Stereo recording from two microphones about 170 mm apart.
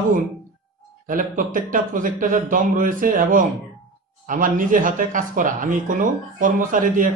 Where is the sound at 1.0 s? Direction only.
50° right (ahead or behind).